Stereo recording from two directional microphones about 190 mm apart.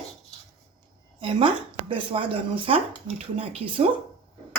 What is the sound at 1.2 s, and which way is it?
Speech, 25° right (ahead or behind).